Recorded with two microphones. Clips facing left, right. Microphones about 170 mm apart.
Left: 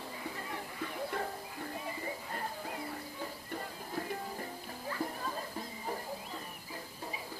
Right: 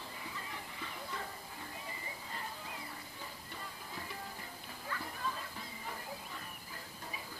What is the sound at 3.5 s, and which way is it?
Music, 50° left (ahead or behind).